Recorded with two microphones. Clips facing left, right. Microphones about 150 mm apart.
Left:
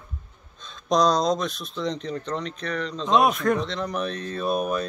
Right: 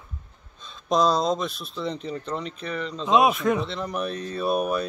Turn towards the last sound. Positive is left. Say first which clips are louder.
# right 1 dB
turn(degrees=-10)  # may be behind; listen again after turning